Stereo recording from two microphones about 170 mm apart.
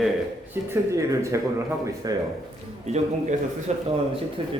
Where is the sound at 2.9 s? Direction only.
40° right (ahead or behind).